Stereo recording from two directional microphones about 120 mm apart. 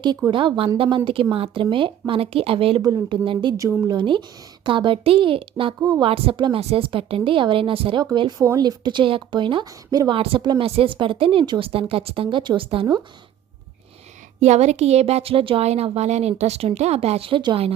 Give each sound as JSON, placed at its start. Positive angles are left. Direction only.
{"t": 0.3, "sound": "a woman's voice", "side_deg": -45}
{"t": 2.8, "sound": "speech", "side_deg": -35}
{"t": 3.9, "sound": "a woman's voice", "side_deg": -45}
{"t": 6.6, "sound": "a woman's voice", "side_deg": -55}
{"t": 14.4, "sound": "a woman's voice", "side_deg": -70}